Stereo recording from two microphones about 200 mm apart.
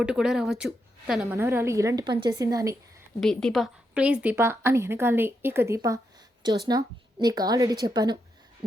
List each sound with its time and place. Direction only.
0.0 s a woman's voice: 5° right (ahead or behind)
1.4 s a woman's voice: 15° right (ahead or behind)
3.2 s a woman's voice: centre (ahead or behind); by 8.2 s 20° right (ahead or behind)